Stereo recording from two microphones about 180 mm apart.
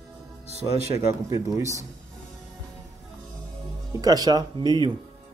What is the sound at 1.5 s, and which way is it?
Speech, 15° right (ahead or behind).